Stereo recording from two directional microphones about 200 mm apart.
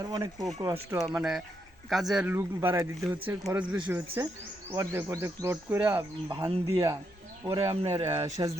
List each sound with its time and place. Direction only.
0.0 s speech: 20° right (ahead or behind)
0.9 s speech: 5° right (ahead or behind)
6.2 s speech: 25° right (ahead or behind)
8.1 s speech: 15° right (ahead or behind)